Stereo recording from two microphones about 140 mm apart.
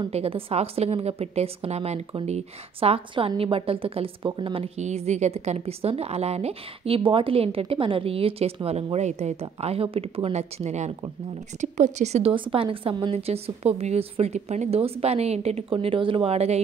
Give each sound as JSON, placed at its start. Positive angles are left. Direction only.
{"t": 0.1, "sound": "a woman's voice", "side_deg": -45}
{"t": 4.7, "sound": "a woman's voice", "side_deg": -55}